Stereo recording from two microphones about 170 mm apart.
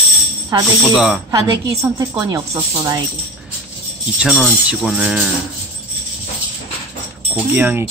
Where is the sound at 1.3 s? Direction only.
20° right (ahead or behind).